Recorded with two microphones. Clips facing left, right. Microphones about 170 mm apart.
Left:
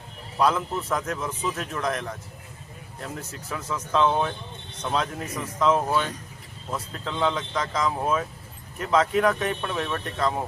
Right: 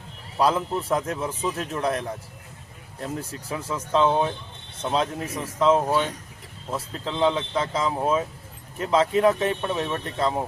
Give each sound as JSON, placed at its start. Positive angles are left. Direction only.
{"t": 0.3, "sound": "a man's voice", "side_deg": -30}